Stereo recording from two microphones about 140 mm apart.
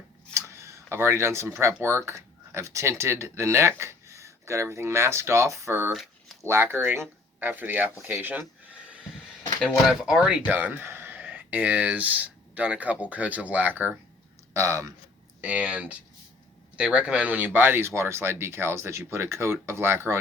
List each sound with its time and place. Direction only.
0.3 s speech: 20° right (ahead or behind)
5.9 s a sound: centre (ahead or behind)
6.4 s speech: 15° right (ahead or behind)
9.6 s speech: 5° right (ahead or behind); by 14.8 s 20° right (ahead or behind)
15.4 s speech: 10° right (ahead or behind)